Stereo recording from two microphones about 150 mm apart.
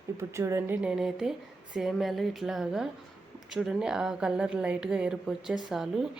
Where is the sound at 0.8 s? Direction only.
5° right (ahead or behind).